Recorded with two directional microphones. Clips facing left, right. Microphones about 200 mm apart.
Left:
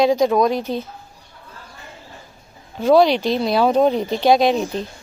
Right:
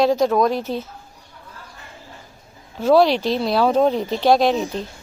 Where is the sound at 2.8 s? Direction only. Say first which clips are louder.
Left 1 dB; 5° right (ahead or behind).